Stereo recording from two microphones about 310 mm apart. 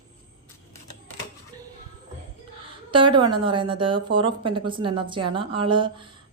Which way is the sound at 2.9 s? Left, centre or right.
Centre.